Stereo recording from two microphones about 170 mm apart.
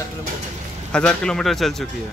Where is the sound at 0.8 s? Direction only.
5° left (ahead or behind).